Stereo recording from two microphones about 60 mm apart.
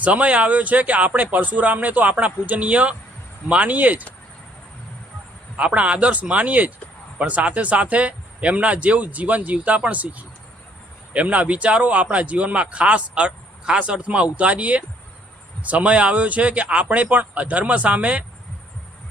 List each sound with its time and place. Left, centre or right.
0.0 s speech: right
5.5 s speech: right